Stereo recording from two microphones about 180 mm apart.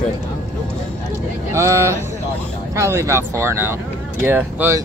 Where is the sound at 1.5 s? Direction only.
15° right (ahead or behind).